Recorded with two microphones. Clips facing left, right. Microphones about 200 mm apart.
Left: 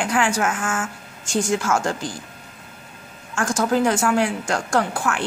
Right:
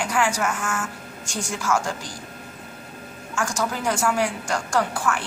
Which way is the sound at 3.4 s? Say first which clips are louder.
Left 7 dB; 55° left (ahead or behind).